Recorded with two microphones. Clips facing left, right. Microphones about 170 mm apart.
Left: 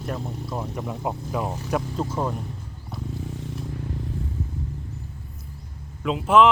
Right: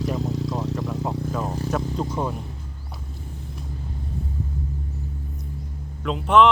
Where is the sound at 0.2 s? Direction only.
90° right.